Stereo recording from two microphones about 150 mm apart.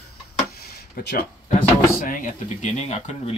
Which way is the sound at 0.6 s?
85° left.